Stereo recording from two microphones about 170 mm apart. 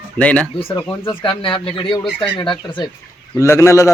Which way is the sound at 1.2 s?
30° left (ahead or behind).